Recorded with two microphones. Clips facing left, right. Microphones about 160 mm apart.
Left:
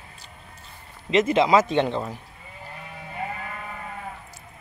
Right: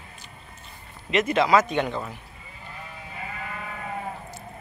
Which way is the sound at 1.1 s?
25° left (ahead or behind).